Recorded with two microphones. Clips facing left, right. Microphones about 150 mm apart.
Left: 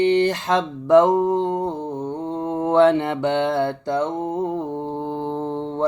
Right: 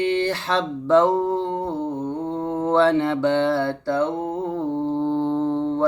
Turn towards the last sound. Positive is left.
turn(degrees=20)  # may be behind; listen again after turning